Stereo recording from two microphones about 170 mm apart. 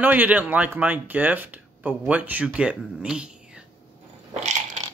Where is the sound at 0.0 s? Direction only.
10° right (ahead or behind).